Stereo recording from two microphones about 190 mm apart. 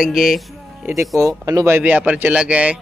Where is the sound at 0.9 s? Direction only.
15° right (ahead or behind).